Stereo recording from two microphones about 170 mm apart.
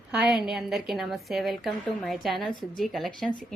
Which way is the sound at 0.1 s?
5° right (ahead or behind).